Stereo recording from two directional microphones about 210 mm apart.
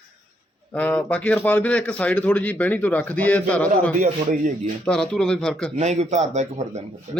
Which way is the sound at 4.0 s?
40° right (ahead or behind).